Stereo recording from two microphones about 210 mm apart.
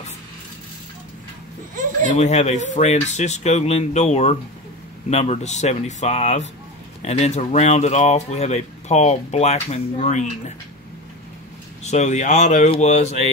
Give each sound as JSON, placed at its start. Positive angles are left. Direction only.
{"t": 2.0, "sound": "speech", "side_deg": 30}
{"t": 11.8, "sound": "speech", "side_deg": 35}